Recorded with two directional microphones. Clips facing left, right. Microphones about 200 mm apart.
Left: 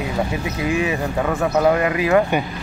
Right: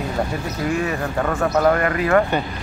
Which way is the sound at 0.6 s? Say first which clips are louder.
Left 2 dB; 10° left (ahead or behind).